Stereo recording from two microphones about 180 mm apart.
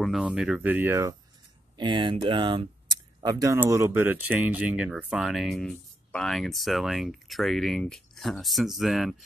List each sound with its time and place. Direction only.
0.0 s speech: centre (ahead or behind)
1.8 s speech: 25° right (ahead or behind); by 9.1 s centre (ahead or behind)